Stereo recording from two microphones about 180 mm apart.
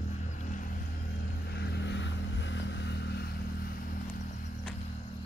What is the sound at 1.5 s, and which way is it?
Vehicle, 70° left (ahead or behind).